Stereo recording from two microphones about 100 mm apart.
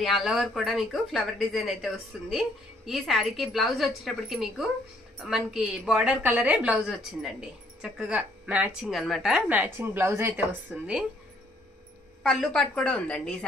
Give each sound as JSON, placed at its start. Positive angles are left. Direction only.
{"t": 0.0, "sound": "speech", "side_deg": 0}
{"t": 6.9, "sound": "speech", "side_deg": 0}
{"t": 8.8, "sound": "speech", "side_deg": 0}
{"t": 9.5, "sound": "speech", "side_deg": -15}
{"t": 9.8, "sound": "speech", "side_deg": -25}
{"t": 12.2, "sound": "a woman's voice", "side_deg": 5}